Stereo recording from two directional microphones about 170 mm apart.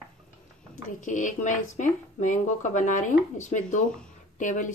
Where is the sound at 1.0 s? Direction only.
50° left (ahead or behind).